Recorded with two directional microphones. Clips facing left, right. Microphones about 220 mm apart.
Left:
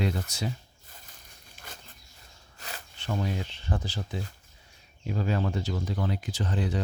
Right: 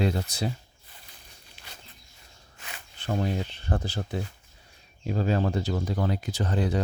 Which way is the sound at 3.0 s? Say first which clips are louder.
Right 3 dB; 40° right (ahead or behind).